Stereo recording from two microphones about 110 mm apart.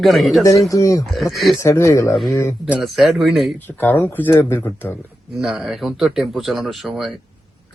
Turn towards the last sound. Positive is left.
turn(degrees=0)  # may be behind; listen again after turning